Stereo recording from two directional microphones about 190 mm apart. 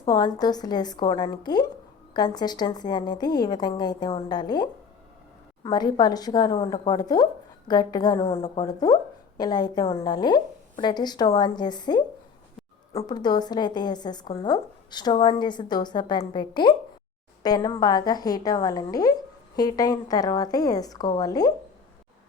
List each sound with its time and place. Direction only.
0.0 s a woman's voice: 20° left (ahead or behind)